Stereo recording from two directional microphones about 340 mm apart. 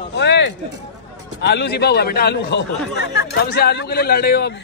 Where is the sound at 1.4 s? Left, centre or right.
Left.